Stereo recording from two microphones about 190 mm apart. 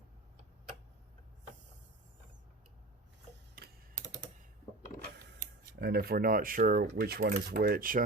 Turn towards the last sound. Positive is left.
turn(degrees=-50)  # may be behind; listen again after turning